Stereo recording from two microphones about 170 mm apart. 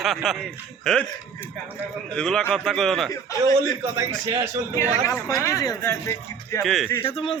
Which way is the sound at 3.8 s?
15° right (ahead or behind).